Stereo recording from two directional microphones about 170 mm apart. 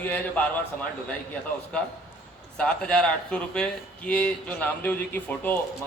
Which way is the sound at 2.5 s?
5° left (ahead or behind).